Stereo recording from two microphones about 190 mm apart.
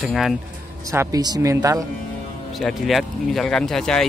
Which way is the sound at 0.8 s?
20° right (ahead or behind).